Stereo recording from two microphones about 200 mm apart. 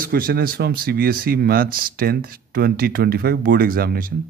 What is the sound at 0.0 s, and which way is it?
Speech, 50° right (ahead or behind).